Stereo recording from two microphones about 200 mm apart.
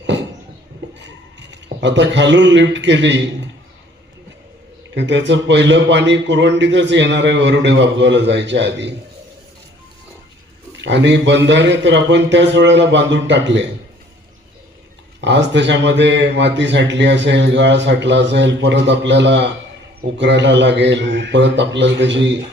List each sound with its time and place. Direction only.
1.5 s a man's voice: 65° right (ahead or behind)
4.9 s a man's voice: 65° right (ahead or behind)
10.8 s a man's voice: 60° right (ahead or behind)
15.2 s a man's voice: 60° right (ahead or behind)